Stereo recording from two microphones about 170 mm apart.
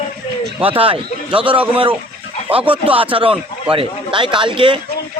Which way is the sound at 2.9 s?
30° right (ahead or behind).